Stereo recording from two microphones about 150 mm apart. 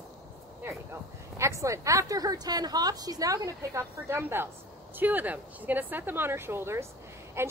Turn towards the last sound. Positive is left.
turn(degrees=-15)  # may be behind; listen again after turning